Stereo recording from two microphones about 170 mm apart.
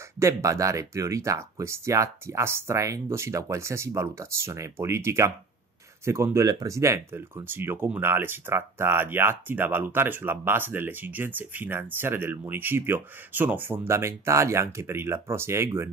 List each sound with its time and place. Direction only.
0.2 s speech: 15° right (ahead or behind)